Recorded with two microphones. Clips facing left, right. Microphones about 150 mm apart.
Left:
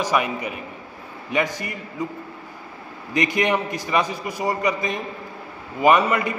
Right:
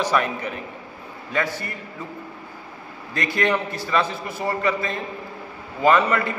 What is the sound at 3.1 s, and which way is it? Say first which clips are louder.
A man's voice: left 2 dB; 20° left (ahead or behind).